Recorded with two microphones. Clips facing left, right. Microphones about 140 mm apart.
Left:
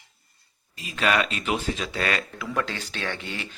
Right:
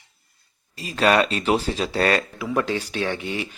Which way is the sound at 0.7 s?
35° right (ahead or behind).